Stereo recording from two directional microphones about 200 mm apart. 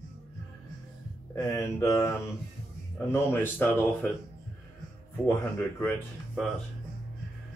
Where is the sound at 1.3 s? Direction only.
15° left (ahead or behind).